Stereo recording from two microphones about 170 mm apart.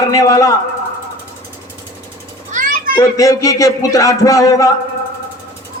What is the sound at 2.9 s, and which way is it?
A man's voice, 20° left (ahead or behind).